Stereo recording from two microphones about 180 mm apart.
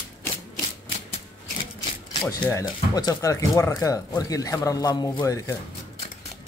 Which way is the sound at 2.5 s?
20° left (ahead or behind).